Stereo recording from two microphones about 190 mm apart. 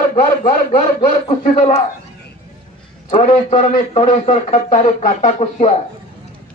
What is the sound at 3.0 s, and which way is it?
A man's voice, 35° left (ahead or behind).